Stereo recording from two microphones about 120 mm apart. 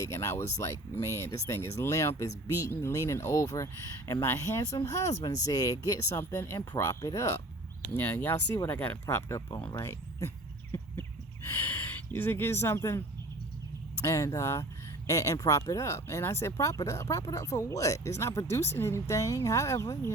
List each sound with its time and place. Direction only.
0.0 s speech: 25° left (ahead or behind)
6.3 s speech: 20° left (ahead or behind)
9.7 s a sound: 25° left (ahead or behind)
11.4 s speech: 20° left (ahead or behind)
14.0 s speech: 25° left (ahead or behind)